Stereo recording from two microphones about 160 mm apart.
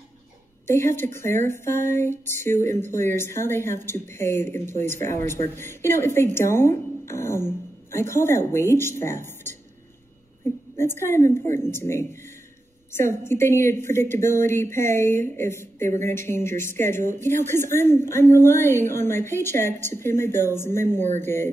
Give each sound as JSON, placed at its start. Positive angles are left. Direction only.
{"t": 0.7, "sound": "speech", "side_deg": 15}
{"t": 10.4, "sound": "a sound", "side_deg": 15}
{"t": 10.8, "sound": "speech", "side_deg": 15}